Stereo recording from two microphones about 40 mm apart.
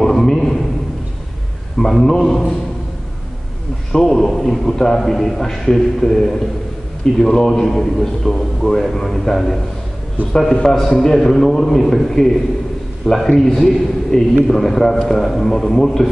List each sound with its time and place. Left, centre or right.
0.0 s a sound: centre
1.8 s a man's voice: centre
3.9 s a man's voice: centre
10.5 s a man's voice: centre